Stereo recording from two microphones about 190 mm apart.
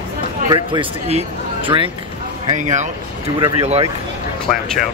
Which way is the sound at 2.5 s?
40° right (ahead or behind).